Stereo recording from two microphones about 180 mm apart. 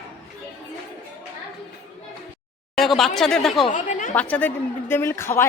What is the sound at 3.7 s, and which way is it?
Chatter, 45° left (ahead or behind).